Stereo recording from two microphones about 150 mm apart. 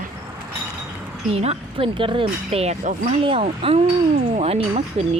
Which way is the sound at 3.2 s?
40° right (ahead or behind).